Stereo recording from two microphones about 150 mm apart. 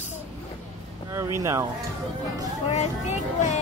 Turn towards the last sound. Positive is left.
turn(degrees=50)  # may be behind; listen again after turning